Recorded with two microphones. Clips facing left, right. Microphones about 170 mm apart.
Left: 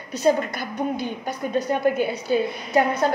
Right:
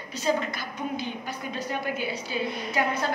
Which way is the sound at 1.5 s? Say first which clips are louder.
Left 10 dB; 50° left (ahead or behind).